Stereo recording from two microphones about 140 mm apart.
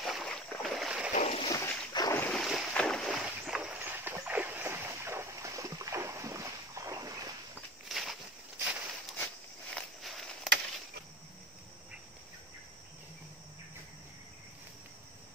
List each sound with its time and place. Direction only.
0.0 s boat: centre (ahead or behind)
1.1 s splash: 45° left (ahead or behind)
1.5 s boat: 20° left (ahead or behind)
2.2 s boat: centre (ahead or behind); by 7.3 s 25° right (ahead or behind)
7.9 s a sound: centre (ahead or behind)
9.8 s walk: centre (ahead or behind)